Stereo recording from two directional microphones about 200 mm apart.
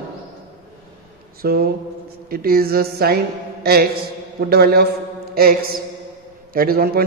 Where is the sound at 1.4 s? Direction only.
50° right (ahead or behind).